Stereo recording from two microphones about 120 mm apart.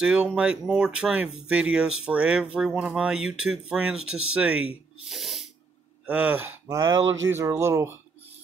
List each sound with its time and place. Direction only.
0.0 s speech: 10° right (ahead or behind)
5.1 s sneeze: centre (ahead or behind)
6.0 s speech: 15° right (ahead or behind)